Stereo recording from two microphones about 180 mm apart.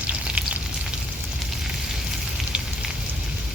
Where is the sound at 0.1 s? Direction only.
5° right (ahead or behind).